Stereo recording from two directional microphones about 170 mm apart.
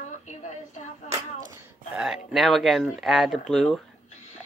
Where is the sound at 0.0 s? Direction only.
45° left (ahead or behind).